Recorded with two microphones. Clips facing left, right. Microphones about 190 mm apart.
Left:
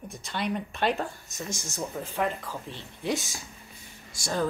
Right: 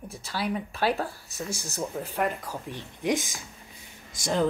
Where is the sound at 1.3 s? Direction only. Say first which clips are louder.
Right 4 dB; 35° right (ahead or behind).